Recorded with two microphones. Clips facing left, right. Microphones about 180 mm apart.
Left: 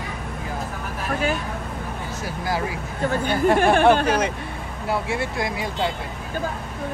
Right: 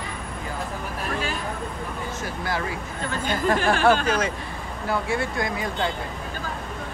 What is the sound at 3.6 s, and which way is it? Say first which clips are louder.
Speech: left 3 dB; 55° left (ahead or behind).